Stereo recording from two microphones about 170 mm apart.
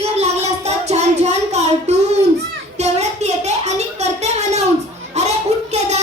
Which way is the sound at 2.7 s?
40° right (ahead or behind).